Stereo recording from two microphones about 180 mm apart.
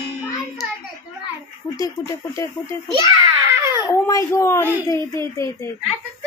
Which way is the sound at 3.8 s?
20° left (ahead or behind).